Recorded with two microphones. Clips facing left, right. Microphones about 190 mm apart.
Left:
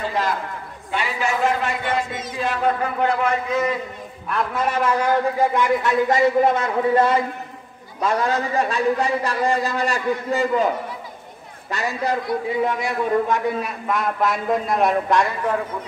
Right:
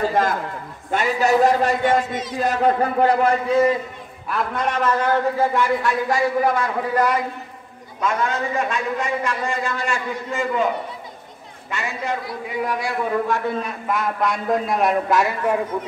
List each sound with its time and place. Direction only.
0.0 s a sound: 50° right (ahead or behind)
0.9 s a man's voice: 40° right (ahead or behind)
4.3 s a man's voice: 5° left (ahead or behind); by 7.2 s 25° left (ahead or behind)
8.0 s a man's voice: 35° left (ahead or behind)
11.7 s a man's voice: 35° left (ahead or behind)
12.6 s a man's voice: 20° left (ahead or behind)
13.6 s a man's voice: centre (ahead or behind)